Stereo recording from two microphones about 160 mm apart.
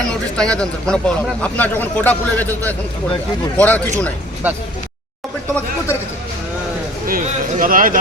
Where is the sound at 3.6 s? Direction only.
10° left (ahead or behind).